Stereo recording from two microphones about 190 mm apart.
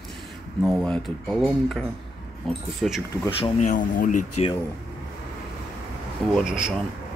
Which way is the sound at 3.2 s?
30° left (ahead or behind).